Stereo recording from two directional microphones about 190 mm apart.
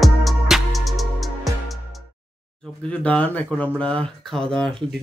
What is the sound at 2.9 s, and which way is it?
Speech, 5° left (ahead or behind).